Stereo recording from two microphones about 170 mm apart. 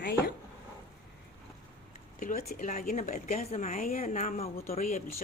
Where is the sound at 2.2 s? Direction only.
50° left (ahead or behind).